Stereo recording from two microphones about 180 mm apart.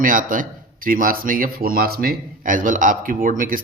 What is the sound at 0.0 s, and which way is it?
A man's voice, 50° right (ahead or behind).